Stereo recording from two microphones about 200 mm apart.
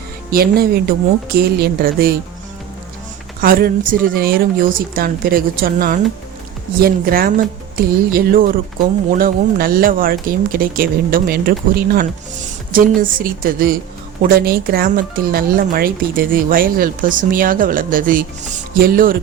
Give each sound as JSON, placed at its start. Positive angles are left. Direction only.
{"t": 0.3, "sound": "speech", "side_deg": -50}
{"t": 3.4, "sound": "speech", "side_deg": -45}